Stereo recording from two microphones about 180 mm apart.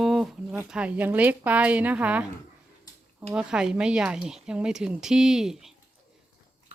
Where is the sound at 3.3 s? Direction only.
5° right (ahead or behind).